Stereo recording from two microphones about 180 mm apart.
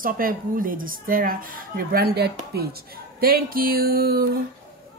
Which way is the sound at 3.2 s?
55° right (ahead or behind).